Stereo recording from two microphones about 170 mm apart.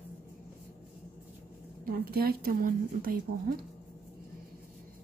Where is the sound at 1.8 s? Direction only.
60° right (ahead or behind).